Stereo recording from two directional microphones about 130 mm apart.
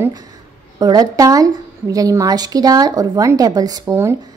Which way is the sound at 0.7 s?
30° right (ahead or behind).